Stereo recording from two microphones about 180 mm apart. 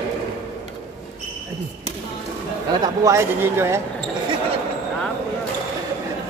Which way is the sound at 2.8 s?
20° right (ahead or behind).